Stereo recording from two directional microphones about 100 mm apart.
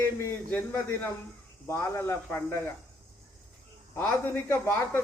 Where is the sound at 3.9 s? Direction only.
20° left (ahead or behind).